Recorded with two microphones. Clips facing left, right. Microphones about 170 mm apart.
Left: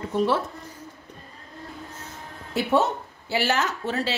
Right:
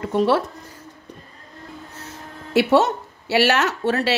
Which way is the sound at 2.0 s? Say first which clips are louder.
Right 3 dB; 75° right (ahead or behind).